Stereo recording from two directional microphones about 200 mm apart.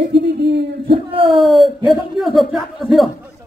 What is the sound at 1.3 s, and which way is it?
Speech, centre (ahead or behind).